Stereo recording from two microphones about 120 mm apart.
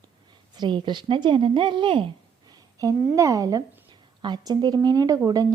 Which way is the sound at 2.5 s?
30° right (ahead or behind).